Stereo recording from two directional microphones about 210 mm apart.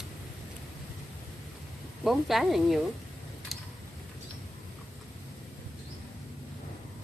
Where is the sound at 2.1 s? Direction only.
Centre (ahead or behind).